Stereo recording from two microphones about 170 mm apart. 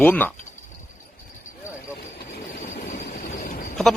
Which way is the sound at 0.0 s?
10° left (ahead or behind).